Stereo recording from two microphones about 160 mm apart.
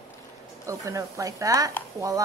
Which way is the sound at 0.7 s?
20° right (ahead or behind).